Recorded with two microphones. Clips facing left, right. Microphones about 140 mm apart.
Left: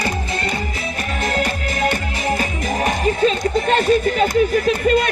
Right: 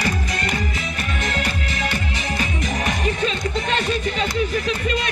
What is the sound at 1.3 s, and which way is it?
Music, 40° left (ahead or behind).